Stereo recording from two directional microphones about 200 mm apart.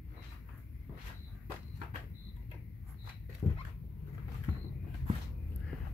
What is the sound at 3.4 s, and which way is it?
Dog, 15° left (ahead or behind).